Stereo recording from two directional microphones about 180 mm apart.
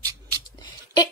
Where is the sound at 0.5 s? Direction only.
25° left (ahead or behind).